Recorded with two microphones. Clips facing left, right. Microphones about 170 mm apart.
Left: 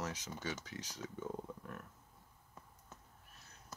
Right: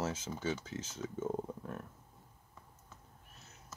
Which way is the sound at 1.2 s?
40° right (ahead or behind).